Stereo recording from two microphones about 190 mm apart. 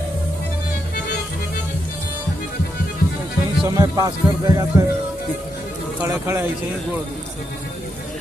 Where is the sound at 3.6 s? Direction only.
20° right (ahead or behind).